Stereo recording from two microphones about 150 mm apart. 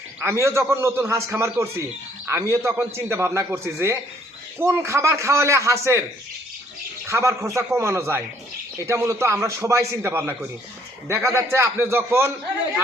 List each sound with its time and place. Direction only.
0.2 s a man's voice: 15° right (ahead or behind)
7.1 s a man's voice: 20° right (ahead or behind)